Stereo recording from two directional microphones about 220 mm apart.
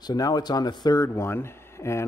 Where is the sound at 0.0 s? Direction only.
15° left (ahead or behind).